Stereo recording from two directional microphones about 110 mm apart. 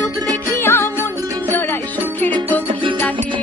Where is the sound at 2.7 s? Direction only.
50° right (ahead or behind).